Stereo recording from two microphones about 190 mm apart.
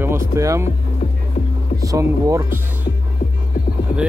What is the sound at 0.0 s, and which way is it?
Speech, 15° right (ahead or behind).